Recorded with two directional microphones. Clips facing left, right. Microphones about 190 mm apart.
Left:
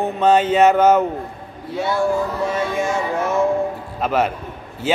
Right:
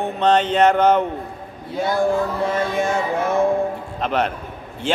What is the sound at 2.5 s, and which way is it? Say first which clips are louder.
Speech: even; 55° right (ahead or behind).